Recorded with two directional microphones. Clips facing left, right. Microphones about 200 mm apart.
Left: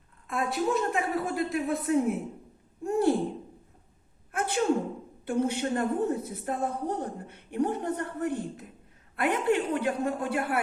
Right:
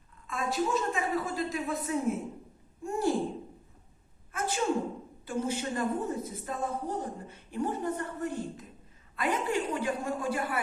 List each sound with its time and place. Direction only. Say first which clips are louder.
0.3 s a woman's voice: left 2 dB; 60° left (ahead or behind)
2.8 s a sound: left 5 dB; 60° left (ahead or behind)
4.3 s sneeze: left 4 dB; 60° left (ahead or behind)
5.2 s a woman's voice: left 5 dB; 60° left (ahead or behind)